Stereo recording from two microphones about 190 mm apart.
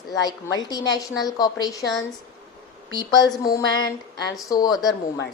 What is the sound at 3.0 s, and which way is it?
Speech, 20° left (ahead or behind).